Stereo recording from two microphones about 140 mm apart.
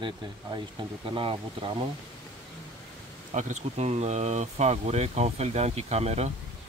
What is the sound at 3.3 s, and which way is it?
Speech, 55° right (ahead or behind).